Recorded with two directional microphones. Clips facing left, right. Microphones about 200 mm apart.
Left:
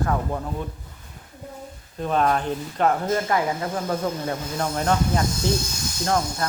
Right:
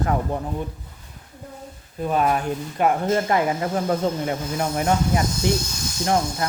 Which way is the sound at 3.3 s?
25° right (ahead or behind).